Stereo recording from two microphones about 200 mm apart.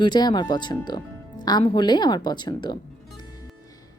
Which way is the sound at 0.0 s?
20° left (ahead or behind).